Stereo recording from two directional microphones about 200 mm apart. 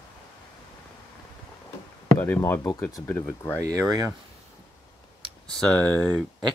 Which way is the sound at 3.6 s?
15° right (ahead or behind).